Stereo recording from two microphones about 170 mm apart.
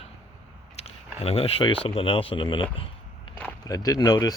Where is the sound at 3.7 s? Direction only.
20° left (ahead or behind).